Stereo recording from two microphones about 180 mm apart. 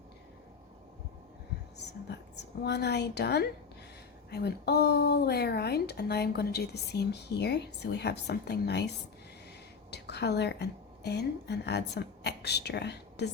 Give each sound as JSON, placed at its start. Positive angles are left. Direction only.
{"t": 1.8, "sound": "a woman's voice", "side_deg": 70}
{"t": 9.9, "sound": "a woman's voice", "side_deg": 70}